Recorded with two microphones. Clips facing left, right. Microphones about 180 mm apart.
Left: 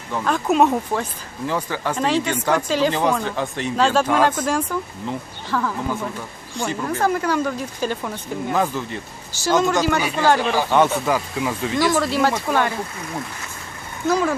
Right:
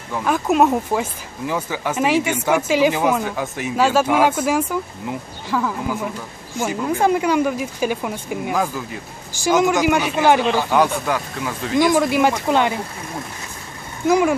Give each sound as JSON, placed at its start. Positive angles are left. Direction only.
{"t": 0.1, "sound": "speech", "side_deg": -5}
{"t": 6.8, "sound": "speech", "side_deg": -15}
{"t": 10.7, "sound": "speech", "side_deg": 0}
{"t": 11.8, "sound": "speech", "side_deg": -15}
{"t": 14.0, "sound": "speech", "side_deg": -15}